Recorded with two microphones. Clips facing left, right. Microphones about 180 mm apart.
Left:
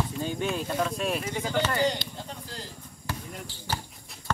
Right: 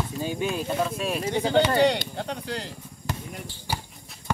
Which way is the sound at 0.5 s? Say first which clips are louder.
Right 2 dB; 5° right (ahead or behind).